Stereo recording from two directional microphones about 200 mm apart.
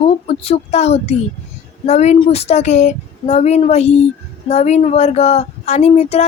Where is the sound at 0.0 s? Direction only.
30° left (ahead or behind).